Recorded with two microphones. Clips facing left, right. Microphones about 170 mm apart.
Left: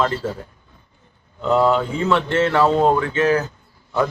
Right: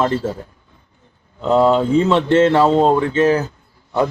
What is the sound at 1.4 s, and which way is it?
Speech, 25° right (ahead or behind).